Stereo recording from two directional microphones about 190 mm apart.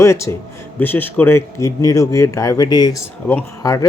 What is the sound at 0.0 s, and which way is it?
Speech, 15° left (ahead or behind).